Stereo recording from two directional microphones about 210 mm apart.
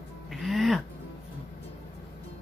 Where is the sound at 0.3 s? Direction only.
Centre (ahead or behind).